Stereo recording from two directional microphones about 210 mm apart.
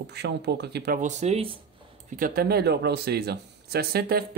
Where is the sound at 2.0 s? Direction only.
40° right (ahead or behind).